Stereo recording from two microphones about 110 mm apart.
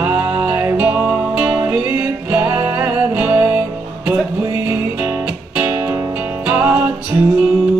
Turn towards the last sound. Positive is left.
turn(degrees=-10)  # may be behind; listen again after turning